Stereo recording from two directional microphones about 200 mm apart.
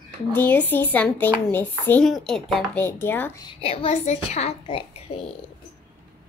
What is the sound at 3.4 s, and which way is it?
A woman's voice, 25° left (ahead or behind).